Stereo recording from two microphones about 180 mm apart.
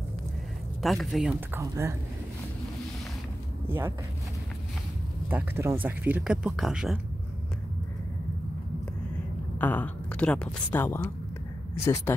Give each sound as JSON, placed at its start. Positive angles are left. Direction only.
{"t": 0.8, "sound": "speech", "side_deg": 0}
{"t": 1.6, "sound": "speech", "side_deg": -15}
{"t": 3.6, "sound": "speech", "side_deg": -15}
{"t": 5.3, "sound": "speech", "side_deg": -10}
{"t": 9.6, "sound": "a woman's voice", "side_deg": 10}